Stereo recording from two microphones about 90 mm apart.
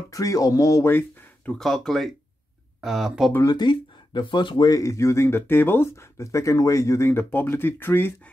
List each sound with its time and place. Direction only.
0.1 s speech: 40° left (ahead or behind)
0.8 s a sound: 25° left (ahead or behind)
1.5 s speech: 5° left (ahead or behind)
3.4 s speech: 55° left (ahead or behind)
4.6 s speech: 35° left (ahead or behind)